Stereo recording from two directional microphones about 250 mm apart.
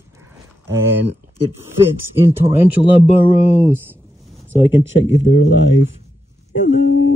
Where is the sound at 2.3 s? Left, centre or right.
Centre.